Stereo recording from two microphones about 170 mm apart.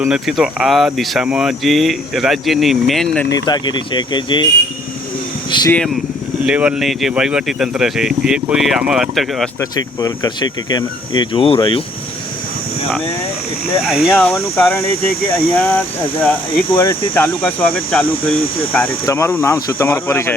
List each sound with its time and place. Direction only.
0.0 s speech: 5° right (ahead or behind)
3.2 s speech: 20° left (ahead or behind)
5.5 s speech: 25° left (ahead or behind)
6.4 s speech: 5° right (ahead or behind)
9.6 s speech: 20° left (ahead or behind)
13.8 s speech: 5° right (ahead or behind)
14.2 s speech: 10° left (ahead or behind)
19.0 s speech: 20° left (ahead or behind)